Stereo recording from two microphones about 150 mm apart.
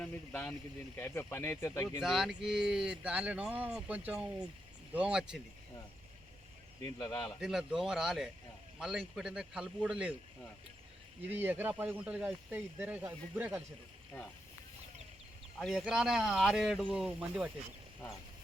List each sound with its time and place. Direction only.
0.0 s speech: 10° left (ahead or behind)
2.0 s speech: 5° right (ahead or behind)
7.0 s a man's voice: 25° left (ahead or behind)
7.3 s speech: 5° right (ahead or behind)
11.3 s speech: 15° right (ahead or behind)
15.5 s speech: centre (ahead or behind)